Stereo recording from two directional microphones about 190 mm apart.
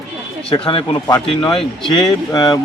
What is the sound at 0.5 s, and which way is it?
A man's voice, 30° left (ahead or behind).